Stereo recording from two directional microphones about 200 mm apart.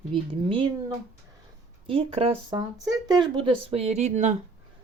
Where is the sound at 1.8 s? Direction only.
30° right (ahead or behind).